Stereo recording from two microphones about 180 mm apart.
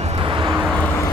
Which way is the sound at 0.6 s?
10° left (ahead or behind).